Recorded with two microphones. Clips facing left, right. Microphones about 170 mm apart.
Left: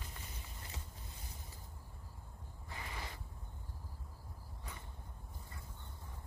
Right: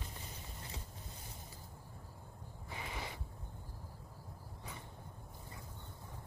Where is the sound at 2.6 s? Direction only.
20° right (ahead or behind).